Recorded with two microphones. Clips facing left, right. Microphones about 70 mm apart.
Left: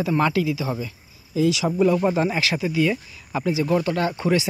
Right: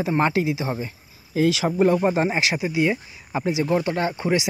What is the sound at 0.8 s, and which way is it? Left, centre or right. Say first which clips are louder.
Speech: even; right.